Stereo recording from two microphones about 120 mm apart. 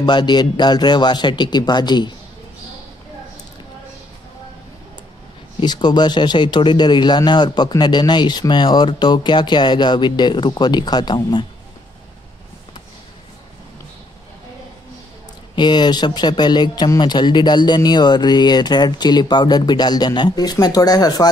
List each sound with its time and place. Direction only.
0.0 s speech: 40° left (ahead or behind)
5.6 s speech: 35° left (ahead or behind)
15.5 s speech: 40° left (ahead or behind)